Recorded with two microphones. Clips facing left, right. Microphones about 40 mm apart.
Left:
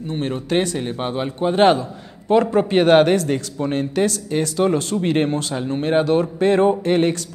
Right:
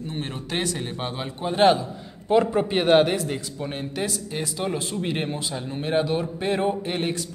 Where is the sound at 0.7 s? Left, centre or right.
Centre.